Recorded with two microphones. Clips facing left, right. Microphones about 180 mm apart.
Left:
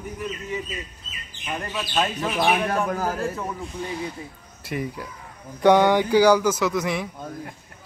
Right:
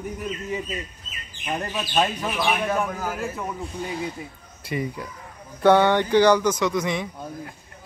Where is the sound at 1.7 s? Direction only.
15° right (ahead or behind).